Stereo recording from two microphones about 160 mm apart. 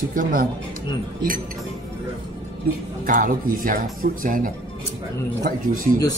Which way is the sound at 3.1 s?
60° right (ahead or behind).